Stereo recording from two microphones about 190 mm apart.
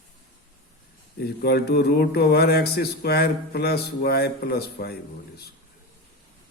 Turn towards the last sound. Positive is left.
turn(degrees=55)  # may be behind; listen again after turning